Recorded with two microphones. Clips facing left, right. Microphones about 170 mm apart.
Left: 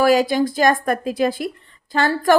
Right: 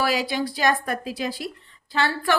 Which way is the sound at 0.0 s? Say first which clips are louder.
Left 8 dB; 45° left (ahead or behind).